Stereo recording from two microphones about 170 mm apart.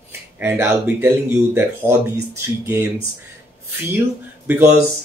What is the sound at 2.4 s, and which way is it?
Speech, 15° right (ahead or behind).